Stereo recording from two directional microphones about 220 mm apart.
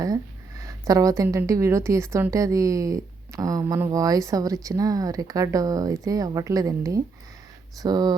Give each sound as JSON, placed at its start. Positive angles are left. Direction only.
{"t": 0.0, "sound": "a woman's voice", "side_deg": -15}